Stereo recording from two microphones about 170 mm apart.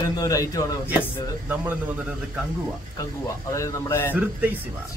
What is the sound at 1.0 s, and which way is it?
Speech, 10° right (ahead or behind).